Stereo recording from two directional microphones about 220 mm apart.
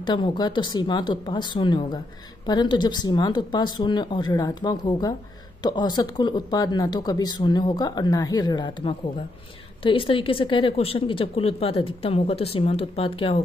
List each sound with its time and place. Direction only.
0.0 s speech: 20° left (ahead or behind)